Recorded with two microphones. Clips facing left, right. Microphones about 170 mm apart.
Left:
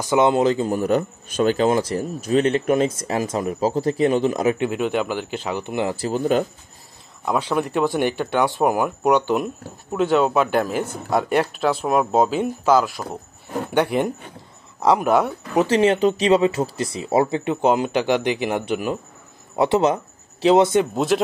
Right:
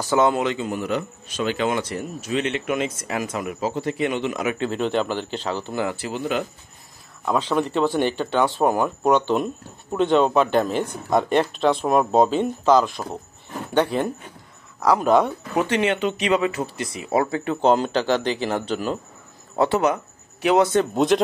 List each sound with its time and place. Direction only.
0.1 s speech: 20° left (ahead or behind)
0.4 s a man's voice: 35° left (ahead or behind)
4.6 s speech: 10° left (ahead or behind)
5.9 s a man's voice: 40° left (ahead or behind)
7.2 s speech: 10° left (ahead or behind)
15.0 s speech: 10° left (ahead or behind)
15.6 s a man's voice: 35° left (ahead or behind)
17.6 s speech: 10° left (ahead or behind)
20.9 s speech: centre (ahead or behind)